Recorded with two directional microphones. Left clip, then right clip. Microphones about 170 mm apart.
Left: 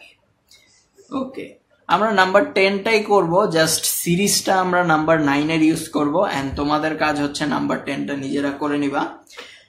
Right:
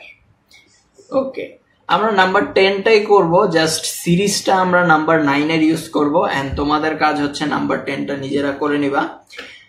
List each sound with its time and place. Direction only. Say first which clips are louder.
1.9 s speech: right 2 dB; 50° left (ahead or behind)